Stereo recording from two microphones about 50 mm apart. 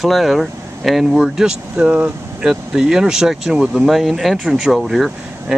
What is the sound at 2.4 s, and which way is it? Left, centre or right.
Speech, centre.